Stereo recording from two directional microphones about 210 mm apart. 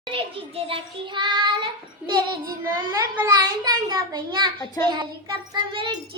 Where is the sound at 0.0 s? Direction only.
25° right (ahead or behind).